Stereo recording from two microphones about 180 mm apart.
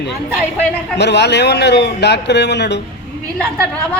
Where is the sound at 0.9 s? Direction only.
70° left (ahead or behind).